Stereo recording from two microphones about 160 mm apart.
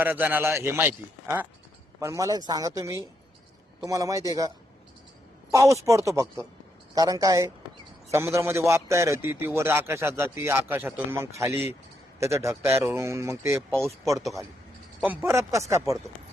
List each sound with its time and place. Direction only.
0.0 s speech: 15° right (ahead or behind)
13.7 s speech: centre (ahead or behind)
15.0 s speech: 15° right (ahead or behind)